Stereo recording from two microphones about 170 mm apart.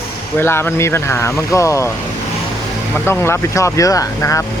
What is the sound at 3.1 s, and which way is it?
Speech, 15° left (ahead or behind).